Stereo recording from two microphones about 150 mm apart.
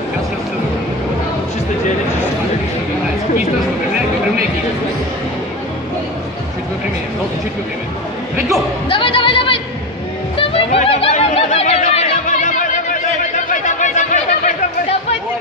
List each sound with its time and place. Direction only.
8.8 s speech: 35° left (ahead or behind)
10.3 s a sound: 35° left (ahead or behind); by 12.6 s 55° left (ahead or behind)
13.5 s chatter: 55° left (ahead or behind)